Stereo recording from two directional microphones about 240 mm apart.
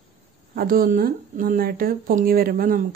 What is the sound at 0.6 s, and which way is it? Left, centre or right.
Speech, right.